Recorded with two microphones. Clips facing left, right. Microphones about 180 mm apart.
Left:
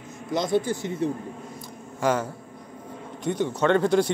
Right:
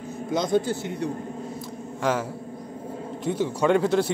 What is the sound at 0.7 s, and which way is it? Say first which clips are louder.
Speech: left 1 dB; 25° left (ahead or behind).